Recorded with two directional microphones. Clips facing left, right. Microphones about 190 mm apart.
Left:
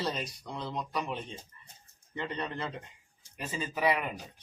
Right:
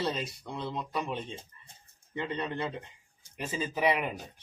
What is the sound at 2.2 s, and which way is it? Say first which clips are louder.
Speech: right 2 dB; 25° right (ahead or behind).